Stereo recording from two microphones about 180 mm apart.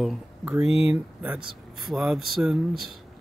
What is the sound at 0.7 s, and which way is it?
Speech, 35° left (ahead or behind).